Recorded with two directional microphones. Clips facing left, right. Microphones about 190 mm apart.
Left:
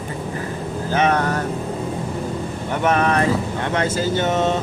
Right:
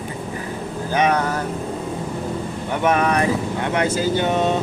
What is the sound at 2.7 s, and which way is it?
Speech, 10° right (ahead or behind).